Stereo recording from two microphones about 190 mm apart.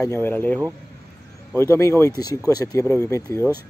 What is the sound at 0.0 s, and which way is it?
Speech, 10° left (ahead or behind).